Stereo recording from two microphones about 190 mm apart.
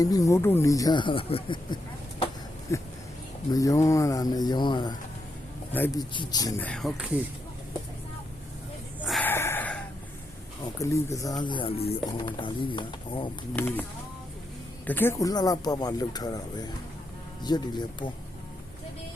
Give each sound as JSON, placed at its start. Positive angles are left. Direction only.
{"t": 0.0, "sound": "speech", "side_deg": 20}
{"t": 3.5, "sound": "speech", "side_deg": 20}
{"t": 6.6, "sound": "speech", "side_deg": 5}
{"t": 9.0, "sound": "a sound", "side_deg": 0}
{"t": 9.3, "sound": "a sound", "side_deg": 10}
{"t": 10.8, "sound": "speech", "side_deg": 15}
{"t": 13.5, "sound": "speech", "side_deg": 10}
{"t": 14.8, "sound": "speech", "side_deg": 10}